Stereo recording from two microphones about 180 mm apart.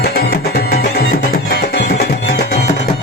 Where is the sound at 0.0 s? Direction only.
60° left (ahead or behind).